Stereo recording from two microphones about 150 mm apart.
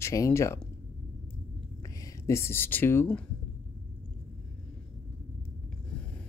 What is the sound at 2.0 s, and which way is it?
Speech, 15° left (ahead or behind).